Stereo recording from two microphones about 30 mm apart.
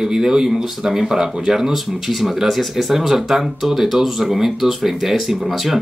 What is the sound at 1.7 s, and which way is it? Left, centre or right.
Speech, centre.